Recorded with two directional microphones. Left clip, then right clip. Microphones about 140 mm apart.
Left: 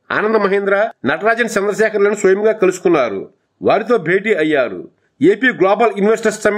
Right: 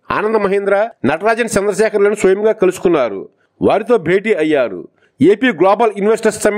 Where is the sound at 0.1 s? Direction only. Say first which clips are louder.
Even; 35° right (ahead or behind).